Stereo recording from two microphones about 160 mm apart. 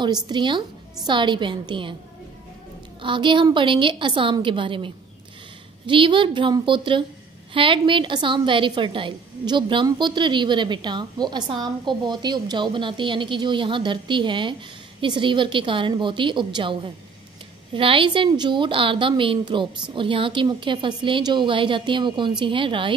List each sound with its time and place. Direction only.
0.0 s a woman's voice: 30° right (ahead or behind)
3.0 s a woman's voice: 30° right (ahead or behind)